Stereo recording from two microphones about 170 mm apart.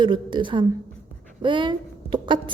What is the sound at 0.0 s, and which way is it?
A woman's voice, 25° right (ahead or behind).